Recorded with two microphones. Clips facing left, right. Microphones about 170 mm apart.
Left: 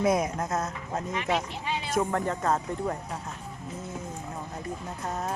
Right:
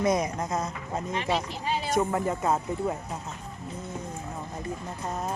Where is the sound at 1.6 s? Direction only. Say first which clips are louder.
Right 3 dB; 35° right (ahead or behind).